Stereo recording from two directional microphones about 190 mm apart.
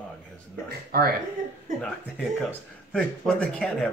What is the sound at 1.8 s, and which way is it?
Speech, 5° left (ahead or behind).